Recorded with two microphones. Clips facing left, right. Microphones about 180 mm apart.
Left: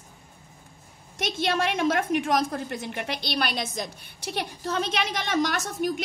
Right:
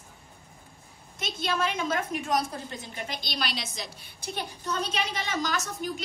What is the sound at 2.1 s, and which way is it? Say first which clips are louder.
A woman's voice: left 5 dB; 80° left.